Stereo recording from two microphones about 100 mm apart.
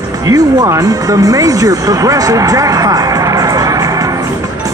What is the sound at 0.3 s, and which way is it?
Speech, 35° right (ahead or behind).